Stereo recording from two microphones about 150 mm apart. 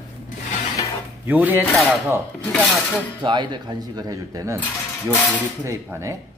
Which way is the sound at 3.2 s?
30° right (ahead or behind).